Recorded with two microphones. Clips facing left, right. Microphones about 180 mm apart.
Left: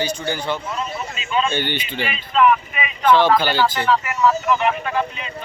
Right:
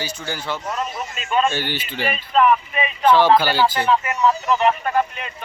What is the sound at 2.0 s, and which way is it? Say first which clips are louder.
Speech: even; 40° right (ahead or behind).